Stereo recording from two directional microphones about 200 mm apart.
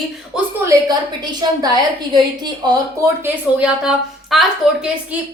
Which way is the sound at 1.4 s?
20° right (ahead or behind).